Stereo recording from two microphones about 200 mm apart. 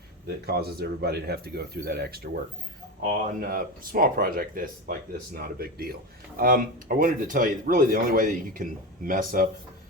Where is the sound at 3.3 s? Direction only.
45° right (ahead or behind).